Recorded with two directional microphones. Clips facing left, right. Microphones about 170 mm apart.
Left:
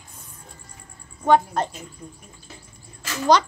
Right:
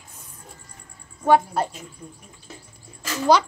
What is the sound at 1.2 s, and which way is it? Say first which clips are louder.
Speech: even; 10° right (ahead or behind).